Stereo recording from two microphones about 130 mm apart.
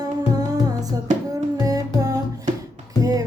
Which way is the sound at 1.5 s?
30° right (ahead or behind).